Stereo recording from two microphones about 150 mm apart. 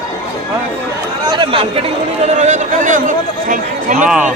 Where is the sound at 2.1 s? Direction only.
50° right (ahead or behind).